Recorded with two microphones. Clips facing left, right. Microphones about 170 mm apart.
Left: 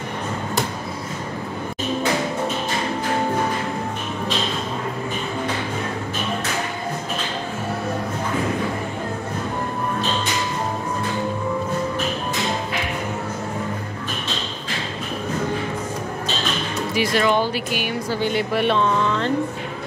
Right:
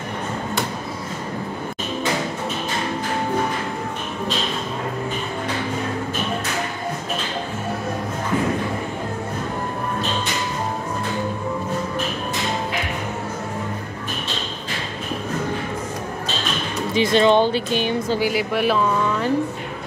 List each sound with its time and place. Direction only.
16.9 s speech: 25° right (ahead or behind)
18.2 s speech: 5° right (ahead or behind)